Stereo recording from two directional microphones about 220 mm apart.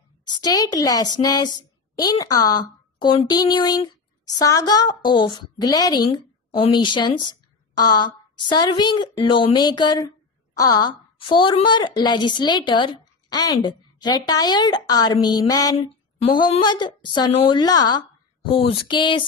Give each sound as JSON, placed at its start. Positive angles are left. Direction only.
{"t": 0.2, "sound": "a woman's voice", "side_deg": 20}